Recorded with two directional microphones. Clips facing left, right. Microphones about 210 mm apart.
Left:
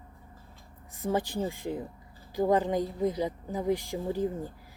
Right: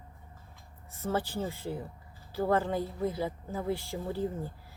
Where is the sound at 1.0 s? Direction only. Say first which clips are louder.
Left 3 dB; 15° left (ahead or behind).